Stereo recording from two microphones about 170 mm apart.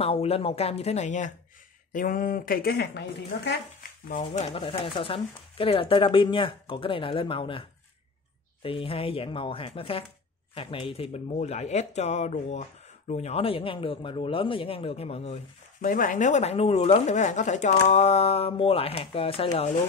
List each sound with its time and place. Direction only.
0.0 s a woman's voice: 35° left (ahead or behind); by 3.5 s 80° left
4.2 s speech: 35° left (ahead or behind)
8.6 s speech: 30° left (ahead or behind)
15.8 s speech: 50° left (ahead or behind); by 19.5 s 35° left (ahead or behind)